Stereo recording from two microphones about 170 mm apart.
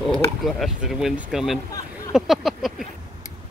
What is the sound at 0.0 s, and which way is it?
Speech, centre (ahead or behind).